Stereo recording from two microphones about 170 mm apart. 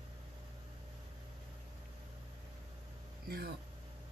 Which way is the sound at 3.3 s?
65° right (ahead or behind).